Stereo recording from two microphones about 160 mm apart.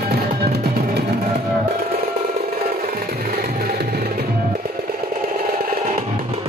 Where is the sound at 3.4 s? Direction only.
75° right (ahead or behind).